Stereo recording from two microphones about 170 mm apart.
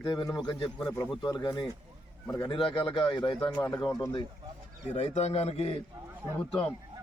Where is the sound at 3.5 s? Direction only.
10° left (ahead or behind).